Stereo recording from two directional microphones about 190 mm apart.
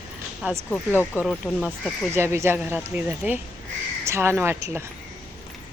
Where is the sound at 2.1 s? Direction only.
15° right (ahead or behind).